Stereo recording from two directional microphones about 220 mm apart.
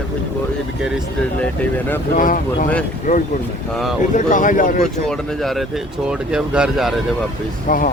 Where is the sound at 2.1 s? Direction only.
35° left (ahead or behind).